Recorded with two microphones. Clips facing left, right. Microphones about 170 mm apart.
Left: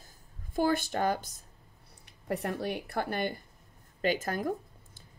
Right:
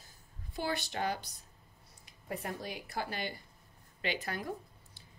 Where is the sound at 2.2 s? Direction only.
65° left (ahead or behind).